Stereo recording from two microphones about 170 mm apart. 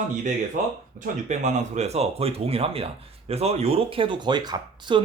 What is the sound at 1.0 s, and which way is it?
Speech, 45° right (ahead or behind).